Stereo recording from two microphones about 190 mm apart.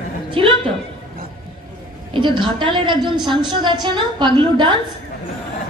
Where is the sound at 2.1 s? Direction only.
25° right (ahead or behind).